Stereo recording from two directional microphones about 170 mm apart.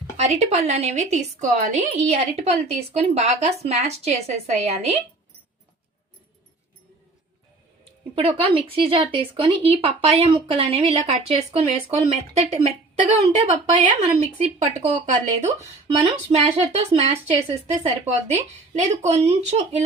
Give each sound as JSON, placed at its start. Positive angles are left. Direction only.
{"t": 0.2, "sound": "speech", "side_deg": -40}
{"t": 8.1, "sound": "speech", "side_deg": -35}
{"t": 16.0, "sound": "speech", "side_deg": -40}